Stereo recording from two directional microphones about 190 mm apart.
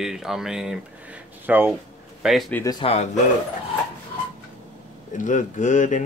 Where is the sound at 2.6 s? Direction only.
20° left (ahead or behind).